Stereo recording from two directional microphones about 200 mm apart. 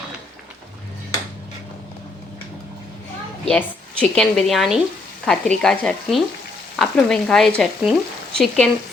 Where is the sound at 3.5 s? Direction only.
5° left (ahead or behind).